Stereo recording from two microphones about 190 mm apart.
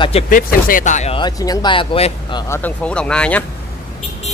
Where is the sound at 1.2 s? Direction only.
20° left (ahead or behind).